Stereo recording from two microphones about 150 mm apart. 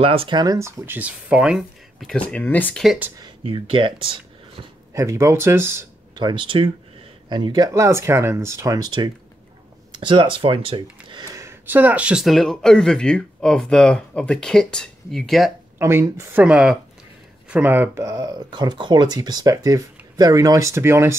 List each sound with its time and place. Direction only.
0.0 s speech: 40° right (ahead or behind); by 0.7 s 20° right (ahead or behind)
0.8 s speech: 10° right (ahead or behind); by 2.8 s 10° left (ahead or behind)
3.2 s speech: 30° right (ahead or behind)
4.9 s speech: 20° right (ahead or behind)
6.1 s speech: 30° right (ahead or behind)
11.3 s speech: 15° right (ahead or behind); by 15.5 s centre (ahead or behind)
15.8 s speech: 20° right (ahead or behind)
16.4 s speech: 5° right (ahead or behind)